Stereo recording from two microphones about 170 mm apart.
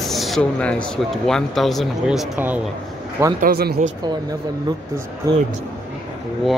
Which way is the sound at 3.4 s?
60° right (ahead or behind).